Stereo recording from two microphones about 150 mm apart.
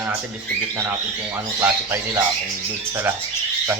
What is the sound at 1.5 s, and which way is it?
Speech, 15° right (ahead or behind).